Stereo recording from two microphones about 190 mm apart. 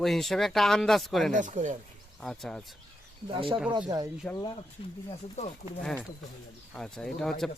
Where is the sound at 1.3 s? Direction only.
40° right (ahead or behind).